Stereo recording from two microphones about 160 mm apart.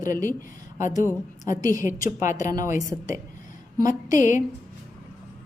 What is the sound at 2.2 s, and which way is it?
Speech, 50° left (ahead or behind).